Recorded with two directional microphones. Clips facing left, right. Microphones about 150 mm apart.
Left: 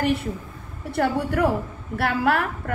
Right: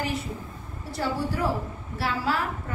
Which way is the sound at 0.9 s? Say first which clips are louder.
Left 6 dB; 60° left (ahead or behind).